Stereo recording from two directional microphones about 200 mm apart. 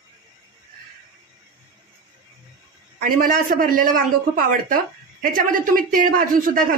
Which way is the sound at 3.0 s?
45° right (ahead or behind).